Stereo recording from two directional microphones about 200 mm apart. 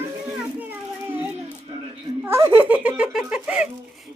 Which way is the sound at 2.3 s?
15° right (ahead or behind).